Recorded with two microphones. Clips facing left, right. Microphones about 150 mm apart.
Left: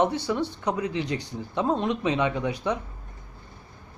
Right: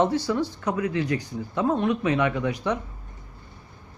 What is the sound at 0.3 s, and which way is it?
A man's voice, 15° left (ahead or behind).